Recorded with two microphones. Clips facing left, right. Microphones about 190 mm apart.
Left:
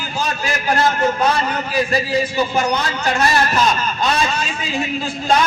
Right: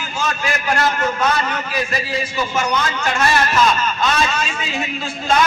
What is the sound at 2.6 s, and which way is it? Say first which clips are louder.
A man's voice: left 1 dB; 35° left (ahead or behind).